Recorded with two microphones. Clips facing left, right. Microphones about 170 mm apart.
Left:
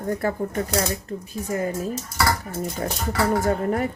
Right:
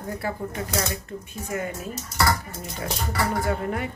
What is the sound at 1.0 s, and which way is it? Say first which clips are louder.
Speech: left 4 dB; 35° left (ahead or behind).